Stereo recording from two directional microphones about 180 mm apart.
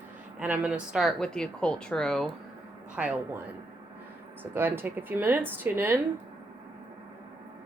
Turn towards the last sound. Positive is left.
turn(degrees=-10)  # may be behind; listen again after turning